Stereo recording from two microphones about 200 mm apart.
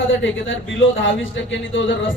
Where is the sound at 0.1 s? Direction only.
70° left (ahead or behind).